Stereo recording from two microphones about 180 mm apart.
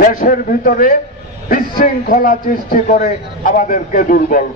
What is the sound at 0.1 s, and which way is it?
A man's voice, 50° left (ahead or behind).